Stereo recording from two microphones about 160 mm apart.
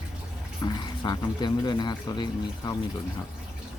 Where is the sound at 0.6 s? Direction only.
25° left (ahead or behind).